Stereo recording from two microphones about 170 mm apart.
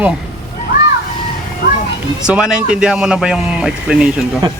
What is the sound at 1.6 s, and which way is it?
Children playing, 90° left.